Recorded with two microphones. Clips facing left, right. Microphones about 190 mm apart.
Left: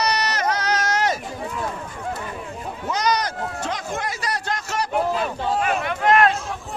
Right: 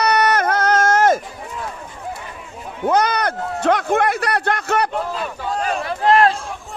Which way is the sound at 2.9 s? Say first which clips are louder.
Right 5 dB; 55° right (ahead or behind).